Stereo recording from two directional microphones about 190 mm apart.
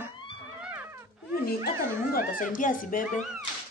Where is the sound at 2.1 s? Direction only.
45° left (ahead or behind).